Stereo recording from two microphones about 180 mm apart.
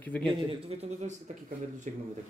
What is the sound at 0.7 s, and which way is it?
A man's voice, 35° right (ahead or behind).